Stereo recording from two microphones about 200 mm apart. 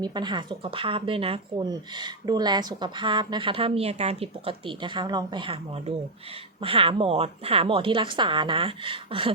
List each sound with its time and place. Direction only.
0.0 s speech: 20° right (ahead or behind)